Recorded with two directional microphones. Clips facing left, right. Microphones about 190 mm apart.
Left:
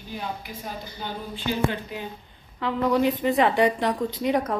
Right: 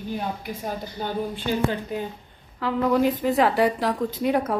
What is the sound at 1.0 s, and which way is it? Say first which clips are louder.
Speech: right 4 dB; 45° right (ahead or behind).